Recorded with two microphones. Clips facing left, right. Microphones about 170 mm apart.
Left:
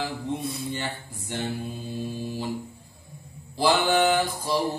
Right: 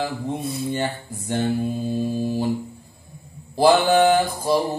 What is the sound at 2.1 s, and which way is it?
Mantra, 45° right (ahead or behind).